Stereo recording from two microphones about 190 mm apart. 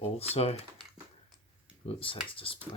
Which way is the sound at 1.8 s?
30° left (ahead or behind).